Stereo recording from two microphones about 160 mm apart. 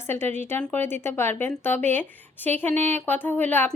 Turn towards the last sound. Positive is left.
turn(degrees=10)  # may be behind; listen again after turning